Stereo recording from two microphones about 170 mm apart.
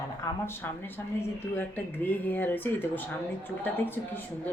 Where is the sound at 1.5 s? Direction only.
10° left (ahead or behind).